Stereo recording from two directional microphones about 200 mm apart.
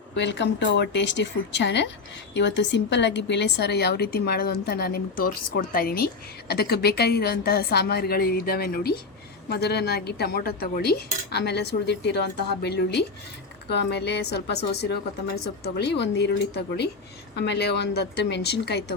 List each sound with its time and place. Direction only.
0.1 s a woman's voice: 60° left (ahead or behind)